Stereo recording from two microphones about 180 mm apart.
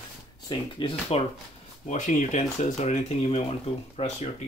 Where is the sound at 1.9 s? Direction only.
45° left (ahead or behind).